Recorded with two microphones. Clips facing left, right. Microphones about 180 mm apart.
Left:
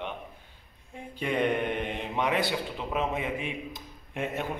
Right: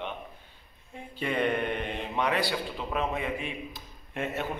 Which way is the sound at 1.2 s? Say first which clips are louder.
Left 1 dB; 15° left (ahead or behind).